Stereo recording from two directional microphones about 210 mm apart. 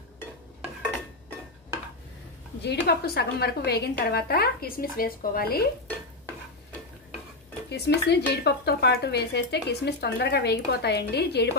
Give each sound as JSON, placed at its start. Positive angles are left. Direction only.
{"t": 2.6, "sound": "speech", "side_deg": 55}
{"t": 7.7, "sound": "speech", "side_deg": 55}